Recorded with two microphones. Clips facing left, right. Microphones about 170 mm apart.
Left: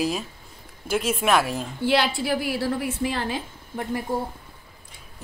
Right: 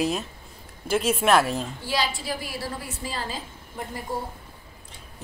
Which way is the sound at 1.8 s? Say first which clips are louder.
Left 10 dB; 65° left (ahead or behind).